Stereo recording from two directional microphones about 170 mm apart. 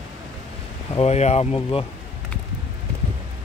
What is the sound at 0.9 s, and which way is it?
Speech, 40° left (ahead or behind).